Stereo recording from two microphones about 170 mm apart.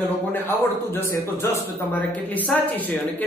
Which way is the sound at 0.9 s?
15° left (ahead or behind).